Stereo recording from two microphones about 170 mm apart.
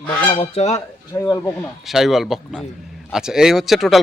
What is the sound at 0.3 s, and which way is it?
Honk, 40° left (ahead or behind).